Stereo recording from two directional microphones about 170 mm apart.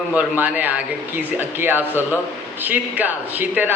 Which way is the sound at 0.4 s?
10° right (ahead or behind).